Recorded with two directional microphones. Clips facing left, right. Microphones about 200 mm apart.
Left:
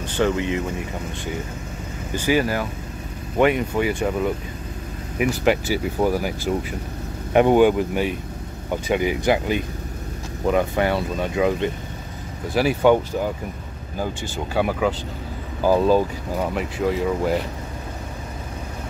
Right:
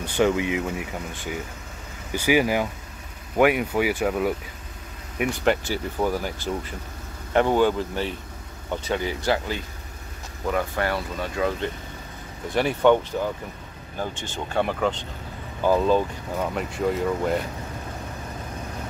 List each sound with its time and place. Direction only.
0.0 s speech: 10° right (ahead or behind)
2.1 s speech: 15° right (ahead or behind)
5.2 s speech: 5° left (ahead or behind)
12.5 s speech: 5° left (ahead or behind)